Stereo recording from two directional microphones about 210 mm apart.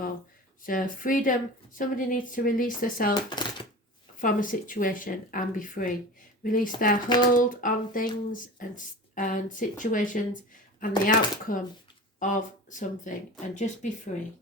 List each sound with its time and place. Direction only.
0.6 s speech: 40° left (ahead or behind)
3.2 s a sound: 20° left (ahead or behind)
4.2 s speech: 40° left (ahead or behind)